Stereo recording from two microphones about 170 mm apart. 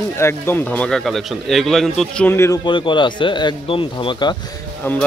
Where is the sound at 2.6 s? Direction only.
30° left (ahead or behind).